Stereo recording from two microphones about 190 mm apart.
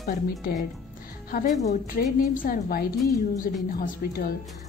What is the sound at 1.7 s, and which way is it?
A woman's voice, 45° left (ahead or behind).